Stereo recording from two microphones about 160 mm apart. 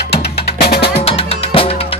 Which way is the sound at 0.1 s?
90° left.